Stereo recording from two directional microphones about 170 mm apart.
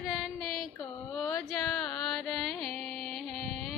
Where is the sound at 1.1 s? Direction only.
Centre (ahead or behind).